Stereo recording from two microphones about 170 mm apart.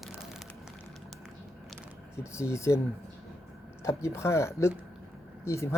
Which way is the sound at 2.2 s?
15° left (ahead or behind).